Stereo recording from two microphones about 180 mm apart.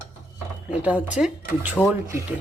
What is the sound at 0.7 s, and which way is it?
Speech, 10° right (ahead or behind).